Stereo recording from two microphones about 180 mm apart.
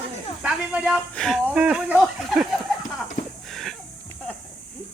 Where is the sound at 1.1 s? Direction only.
5° left (ahead or behind).